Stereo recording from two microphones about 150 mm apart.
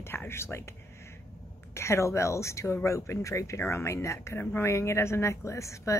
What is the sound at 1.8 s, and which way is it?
Speech, 20° left (ahead or behind).